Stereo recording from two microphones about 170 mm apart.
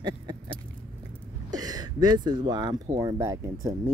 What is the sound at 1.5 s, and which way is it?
Speech, 20° right (ahead or behind).